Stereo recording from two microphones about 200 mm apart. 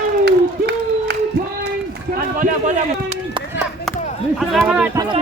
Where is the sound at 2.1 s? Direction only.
40° right (ahead or behind).